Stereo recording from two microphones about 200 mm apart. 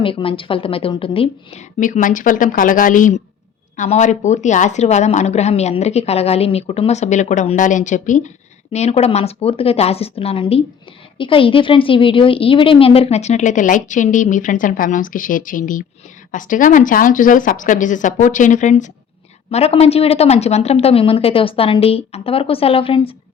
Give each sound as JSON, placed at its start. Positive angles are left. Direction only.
{"t": 0.0, "sound": "a woman's voice", "side_deg": 25}